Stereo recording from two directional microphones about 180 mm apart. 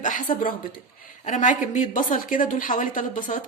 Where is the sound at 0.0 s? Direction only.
45° left (ahead or behind).